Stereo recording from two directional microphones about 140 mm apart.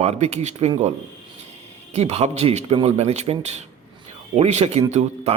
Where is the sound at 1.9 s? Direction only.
50° right (ahead or behind).